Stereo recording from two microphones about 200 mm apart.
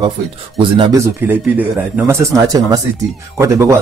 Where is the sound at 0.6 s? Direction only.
25° right (ahead or behind).